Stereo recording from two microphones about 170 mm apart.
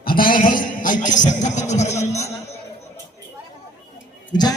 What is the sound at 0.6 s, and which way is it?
Music, 50° left (ahead or behind).